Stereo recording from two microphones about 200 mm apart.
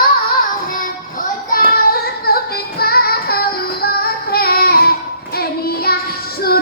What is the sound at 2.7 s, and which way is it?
Music, 50° left (ahead or behind).